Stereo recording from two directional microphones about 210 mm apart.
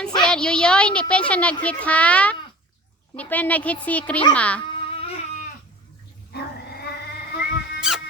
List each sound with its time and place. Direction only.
0.0 s a woman's voice: 5° left (ahead or behind)
4.6 s a sound: 25° left (ahead or behind)
6.3 s dog: 50° left (ahead or behind)
7.8 s insect: 5° right (ahead or behind)